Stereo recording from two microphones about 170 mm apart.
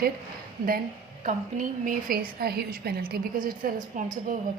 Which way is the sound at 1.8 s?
55° right (ahead or behind).